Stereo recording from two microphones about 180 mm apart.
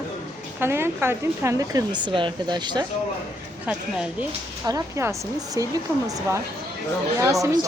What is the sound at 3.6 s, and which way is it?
Speech, 5° right (ahead or behind).